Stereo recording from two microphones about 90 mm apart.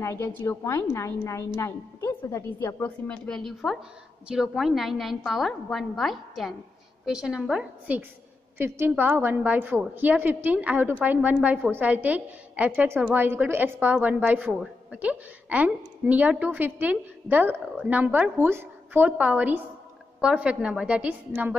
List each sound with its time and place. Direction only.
0.0 s a woman's voice: 30° left (ahead or behind)
3.1 s a woman's voice: 5° left (ahead or behind)
8.5 s a woman's voice: 25° right (ahead or behind)